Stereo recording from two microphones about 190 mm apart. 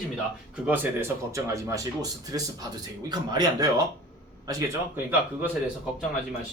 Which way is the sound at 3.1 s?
20° right (ahead or behind).